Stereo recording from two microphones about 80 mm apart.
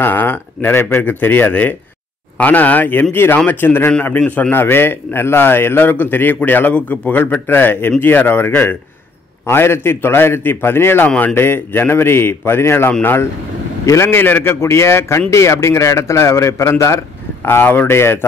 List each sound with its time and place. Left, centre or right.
0.0 s a man's voice: left